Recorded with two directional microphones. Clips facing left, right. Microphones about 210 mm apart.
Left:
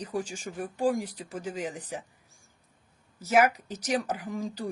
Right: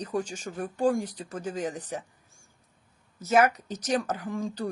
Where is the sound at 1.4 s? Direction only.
35° right (ahead or behind).